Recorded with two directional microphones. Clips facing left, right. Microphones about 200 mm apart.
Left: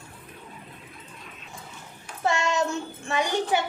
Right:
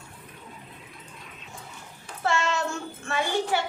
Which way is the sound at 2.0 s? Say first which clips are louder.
Left 1 dB; 15° left (ahead or behind).